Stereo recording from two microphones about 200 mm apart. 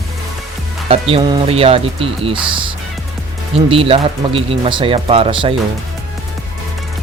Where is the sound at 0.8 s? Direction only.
30° right (ahead or behind).